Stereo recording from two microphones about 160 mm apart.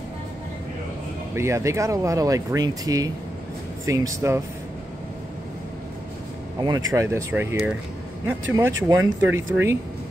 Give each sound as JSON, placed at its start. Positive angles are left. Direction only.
{"t": 1.3, "sound": "speech", "side_deg": -15}
{"t": 6.6, "sound": "speech", "side_deg": -25}